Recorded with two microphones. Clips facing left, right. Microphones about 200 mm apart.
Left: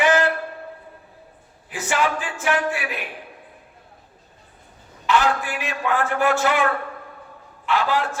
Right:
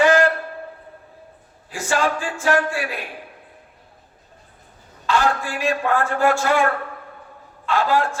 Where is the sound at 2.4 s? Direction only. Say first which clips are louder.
Right 3 dB; 20° left (ahead or behind).